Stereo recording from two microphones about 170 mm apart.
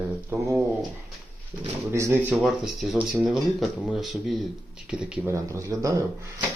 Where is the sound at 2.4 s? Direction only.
Centre (ahead or behind).